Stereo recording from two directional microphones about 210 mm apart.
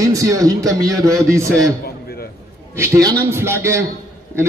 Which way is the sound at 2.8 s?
15° right (ahead or behind).